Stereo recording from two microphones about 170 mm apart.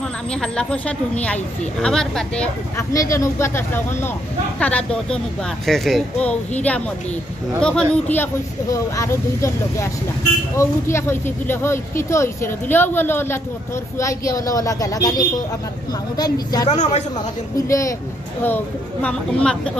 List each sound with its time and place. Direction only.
0.3 s speech: 5° left (ahead or behind)
2.9 s a woman's voice: 20° left (ahead or behind)
16.6 s a man's voice: 40° left (ahead or behind)
17.6 s a woman's voice: 20° left (ahead or behind)